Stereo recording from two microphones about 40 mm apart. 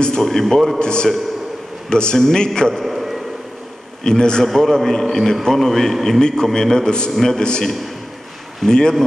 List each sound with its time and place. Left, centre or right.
0.0 s a man's voice: centre
0.7 s a man's voice: left
2.7 s a sound: centre
4.0 s a man's voice: centre
4.5 s a man's voice: centre
7.4 s a man's voice: left